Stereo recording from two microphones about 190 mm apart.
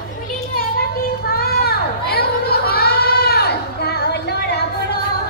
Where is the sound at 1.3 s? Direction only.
55° left (ahead or behind).